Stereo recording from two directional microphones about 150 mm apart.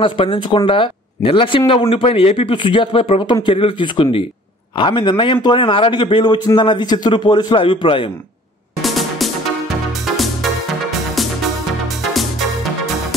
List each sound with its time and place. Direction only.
0.0 s a man's voice: 35° left (ahead or behind)
8.8 s music: centre (ahead or behind)
12.1 s music: centre (ahead or behind)